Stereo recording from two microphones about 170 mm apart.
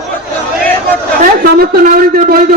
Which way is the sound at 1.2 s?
60° right (ahead or behind).